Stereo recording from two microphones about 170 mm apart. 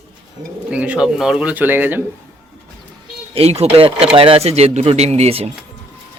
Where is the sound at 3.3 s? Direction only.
35° right (ahead or behind).